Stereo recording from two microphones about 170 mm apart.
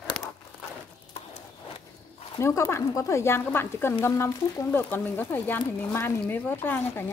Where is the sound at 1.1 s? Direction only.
40° left (ahead or behind).